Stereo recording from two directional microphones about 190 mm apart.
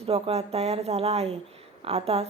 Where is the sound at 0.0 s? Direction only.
30° right (ahead or behind).